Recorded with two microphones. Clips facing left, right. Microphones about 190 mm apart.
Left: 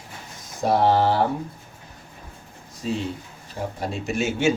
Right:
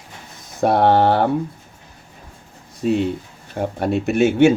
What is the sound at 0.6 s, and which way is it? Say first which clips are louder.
Speech: right 4 dB; 60° right (ahead or behind).